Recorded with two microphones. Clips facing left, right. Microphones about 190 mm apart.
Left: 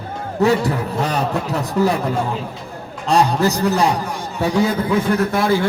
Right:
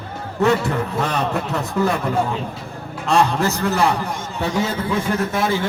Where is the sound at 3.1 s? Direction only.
35° left (ahead or behind).